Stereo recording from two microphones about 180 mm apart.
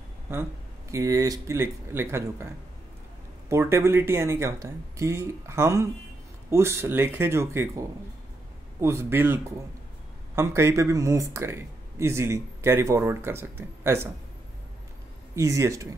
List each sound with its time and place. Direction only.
0.9 s speech: 20° right (ahead or behind)
8.8 s speech: 15° right (ahead or behind)
15.3 s speech: 15° right (ahead or behind)